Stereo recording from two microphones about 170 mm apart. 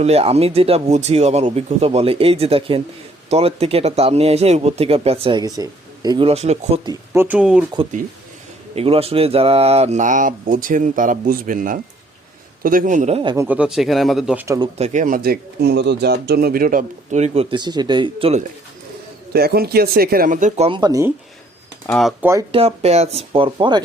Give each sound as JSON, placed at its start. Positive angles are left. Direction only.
{"t": 0.0, "sound": "speech", "side_deg": -35}
{"t": 6.2, "sound": "speech", "side_deg": -40}
{"t": 6.8, "sound": "speech", "side_deg": -15}
{"t": 8.7, "sound": "speech", "side_deg": -35}
{"t": 13.3, "sound": "speech", "side_deg": -10}
{"t": 14.4, "sound": "speech", "side_deg": -20}
{"t": 14.8, "sound": "speech", "side_deg": -45}
{"t": 17.5, "sound": "speech", "side_deg": -25}
{"t": 19.3, "sound": "speech", "side_deg": -65}
{"t": 20.7, "sound": "speech", "side_deg": -25}
{"t": 21.9, "sound": "speech", "side_deg": 5}
{"t": 22.2, "sound": "speech", "side_deg": -15}
{"t": 22.5, "sound": "speech", "side_deg": -35}